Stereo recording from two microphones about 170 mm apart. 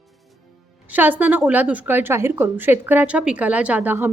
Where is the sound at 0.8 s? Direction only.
10° right (ahead or behind).